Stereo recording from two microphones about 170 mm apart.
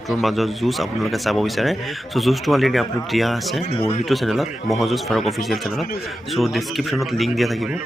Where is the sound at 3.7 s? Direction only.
35° left (ahead or behind).